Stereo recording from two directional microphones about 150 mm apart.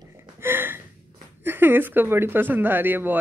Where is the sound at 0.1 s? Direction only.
15° right (ahead or behind).